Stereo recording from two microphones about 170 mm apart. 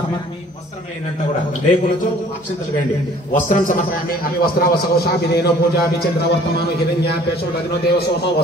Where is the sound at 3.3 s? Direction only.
50° left (ahead or behind); by 8.3 s 70° left (ahead or behind).